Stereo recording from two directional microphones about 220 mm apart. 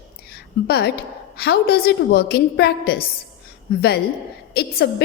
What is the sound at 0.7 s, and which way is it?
A woman's voice, 45° left (ahead or behind).